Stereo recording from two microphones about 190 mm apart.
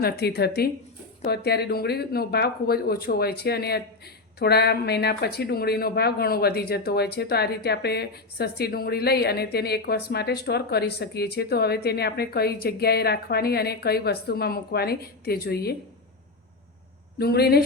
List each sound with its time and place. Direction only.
0.0 s speech: 55° left (ahead or behind)
17.2 s speech: 55° left (ahead or behind)